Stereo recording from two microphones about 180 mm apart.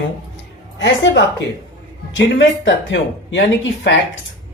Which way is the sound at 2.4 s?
90° left.